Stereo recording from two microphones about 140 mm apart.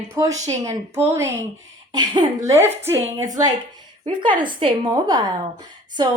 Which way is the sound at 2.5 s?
15° right (ahead or behind).